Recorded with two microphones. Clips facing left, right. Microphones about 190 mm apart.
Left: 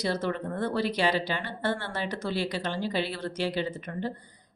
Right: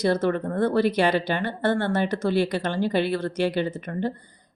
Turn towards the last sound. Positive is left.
turn(degrees=-55)  # may be behind; listen again after turning